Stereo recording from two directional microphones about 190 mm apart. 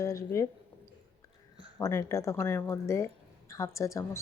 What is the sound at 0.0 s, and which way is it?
Speech, 15° left (ahead or behind).